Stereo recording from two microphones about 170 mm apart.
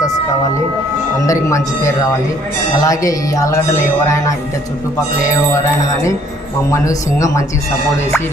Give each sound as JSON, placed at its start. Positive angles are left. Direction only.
{"t": 1.3, "sound": "speech", "side_deg": 20}
{"t": 2.8, "sound": "speech", "side_deg": 20}
{"t": 5.8, "sound": "speech", "side_deg": 20}